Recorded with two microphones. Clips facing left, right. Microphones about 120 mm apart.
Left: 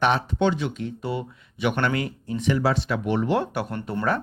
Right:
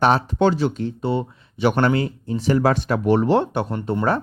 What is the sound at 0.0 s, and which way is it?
Speech, 40° right (ahead or behind).